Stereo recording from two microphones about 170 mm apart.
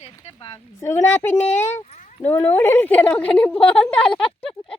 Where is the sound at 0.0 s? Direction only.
35° left (ahead or behind).